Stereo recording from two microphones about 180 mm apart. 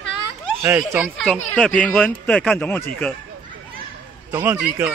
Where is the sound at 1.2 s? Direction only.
5° left (ahead or behind).